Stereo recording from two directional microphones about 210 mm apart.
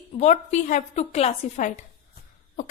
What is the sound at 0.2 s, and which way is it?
A woman's voice, 35° left (ahead or behind).